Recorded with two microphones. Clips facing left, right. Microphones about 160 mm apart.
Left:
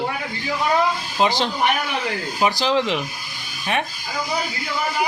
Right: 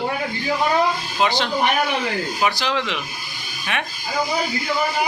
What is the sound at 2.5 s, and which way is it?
Speech, 35° left (ahead or behind).